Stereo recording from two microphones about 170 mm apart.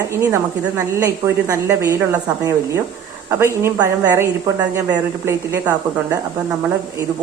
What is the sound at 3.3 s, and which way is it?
A woman's voice, 15° right (ahead or behind).